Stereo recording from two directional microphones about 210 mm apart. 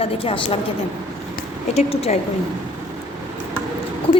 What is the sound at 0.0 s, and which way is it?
Speech, 25° left (ahead or behind).